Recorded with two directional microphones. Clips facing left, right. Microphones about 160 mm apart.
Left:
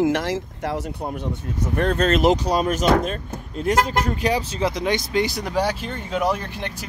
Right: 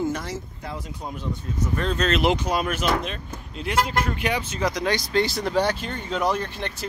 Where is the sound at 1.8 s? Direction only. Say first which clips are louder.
Left 5 dB; 55° left (ahead or behind); by 6.9 s 10° left (ahead or behind).